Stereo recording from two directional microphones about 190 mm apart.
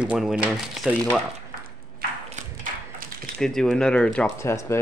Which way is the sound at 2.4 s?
40° right (ahead or behind).